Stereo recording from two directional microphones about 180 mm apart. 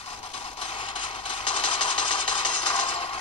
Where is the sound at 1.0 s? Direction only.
25° left (ahead or behind).